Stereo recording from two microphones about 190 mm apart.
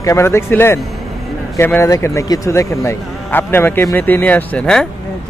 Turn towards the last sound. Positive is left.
turn(degrees=5)  # may be behind; listen again after turning